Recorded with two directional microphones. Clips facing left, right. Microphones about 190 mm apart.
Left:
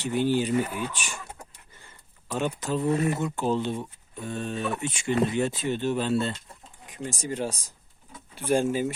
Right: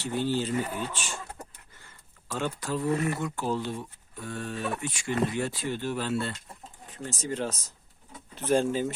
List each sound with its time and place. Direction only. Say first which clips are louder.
0.0 s speech: left 4 dB; 15° left (ahead or behind)
2.3 s speech: left 3 dB; 20° left (ahead or behind)